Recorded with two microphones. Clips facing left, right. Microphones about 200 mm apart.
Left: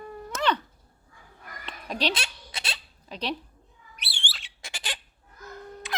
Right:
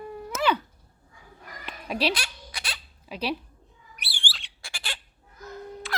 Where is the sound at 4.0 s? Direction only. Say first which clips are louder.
Right 1 dB; 25° left (ahead or behind).